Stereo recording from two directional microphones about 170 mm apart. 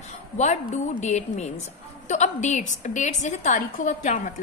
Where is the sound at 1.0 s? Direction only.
45° left (ahead or behind).